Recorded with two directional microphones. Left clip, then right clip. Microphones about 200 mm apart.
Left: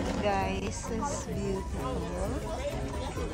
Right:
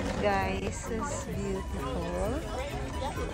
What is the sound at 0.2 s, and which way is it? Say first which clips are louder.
Speech: right 2 dB; 20° left (ahead or behind).